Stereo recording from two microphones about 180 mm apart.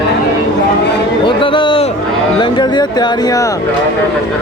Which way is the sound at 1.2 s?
25° left (ahead or behind).